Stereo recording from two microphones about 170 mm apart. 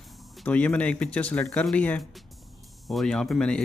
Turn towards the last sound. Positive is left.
turn(degrees=5)  # may be behind; listen again after turning